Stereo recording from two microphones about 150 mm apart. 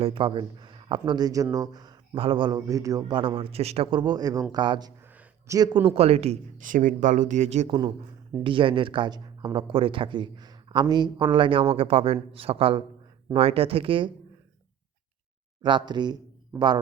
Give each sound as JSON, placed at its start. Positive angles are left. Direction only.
{"t": 0.0, "sound": "speech", "side_deg": -35}
{"t": 2.6, "sound": "speech", "side_deg": -20}
{"t": 5.1, "sound": "a sound", "side_deg": -25}
{"t": 5.9, "sound": "speech", "side_deg": -40}
{"t": 6.6, "sound": "speech", "side_deg": -60}
{"t": 7.7, "sound": "speech", "side_deg": -30}
{"t": 15.6, "sound": "speech", "side_deg": -30}